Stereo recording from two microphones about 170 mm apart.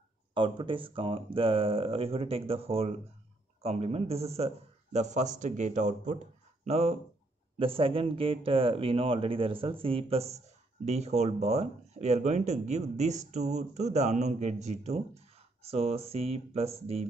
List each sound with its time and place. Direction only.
0.3 s a man's voice: 30° right (ahead or behind)